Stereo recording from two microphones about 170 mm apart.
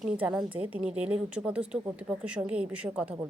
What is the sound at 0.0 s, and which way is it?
A woman's voice, 5° right (ahead or behind).